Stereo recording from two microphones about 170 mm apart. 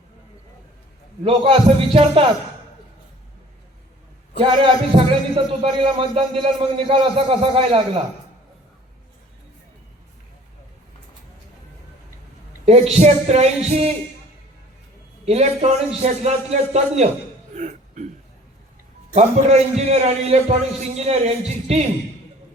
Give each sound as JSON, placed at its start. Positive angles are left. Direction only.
{"t": 1.2, "sound": "a man's voice", "side_deg": -30}
{"t": 4.4, "sound": "a man's voice", "side_deg": -30}
{"t": 12.6, "sound": "a man's voice", "side_deg": -40}
{"t": 15.2, "sound": "a man's voice", "side_deg": -40}
{"t": 17.5, "sound": "throat clearing", "side_deg": -50}
{"t": 19.1, "sound": "a man's voice", "side_deg": -40}